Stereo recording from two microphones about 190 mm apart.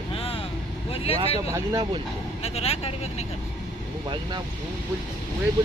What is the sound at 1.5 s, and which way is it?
Speech, 20° right (ahead or behind).